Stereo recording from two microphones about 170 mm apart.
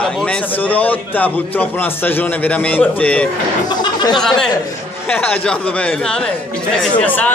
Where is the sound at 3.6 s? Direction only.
25° left (ahead or behind).